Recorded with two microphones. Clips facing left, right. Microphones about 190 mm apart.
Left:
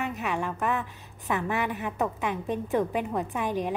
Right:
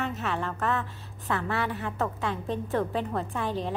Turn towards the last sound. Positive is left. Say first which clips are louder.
# left 2 dB
turn(degrees=15)  # may be behind; listen again after turning